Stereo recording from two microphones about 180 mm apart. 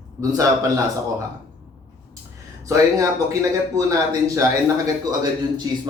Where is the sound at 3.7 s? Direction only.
20° right (ahead or behind).